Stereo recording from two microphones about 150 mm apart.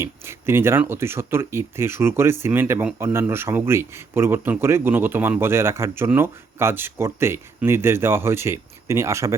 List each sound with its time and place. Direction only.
0.0 s speech: 15° right (ahead or behind)